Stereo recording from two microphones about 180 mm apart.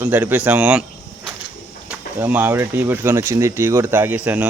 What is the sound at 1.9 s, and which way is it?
Speech, 10° right (ahead or behind).